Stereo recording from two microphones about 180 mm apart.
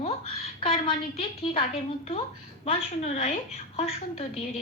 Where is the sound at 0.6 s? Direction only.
30° left (ahead or behind).